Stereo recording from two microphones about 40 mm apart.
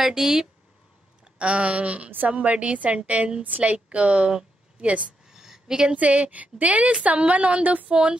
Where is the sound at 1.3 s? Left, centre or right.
Right.